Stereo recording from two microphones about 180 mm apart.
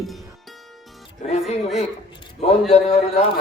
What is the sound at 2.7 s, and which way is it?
Speech, 35° left (ahead or behind).